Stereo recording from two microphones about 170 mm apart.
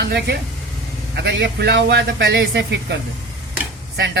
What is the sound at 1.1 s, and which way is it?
A man's voice, 85° right.